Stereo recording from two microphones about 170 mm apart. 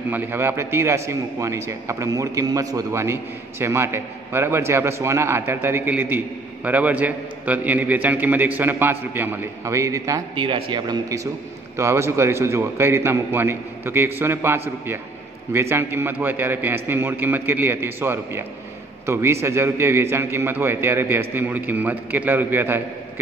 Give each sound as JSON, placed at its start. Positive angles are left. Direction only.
{"t": 0.1, "sound": "a man's voice", "side_deg": -10}